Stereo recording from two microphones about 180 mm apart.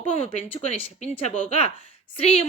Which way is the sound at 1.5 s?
35° left (ahead or behind).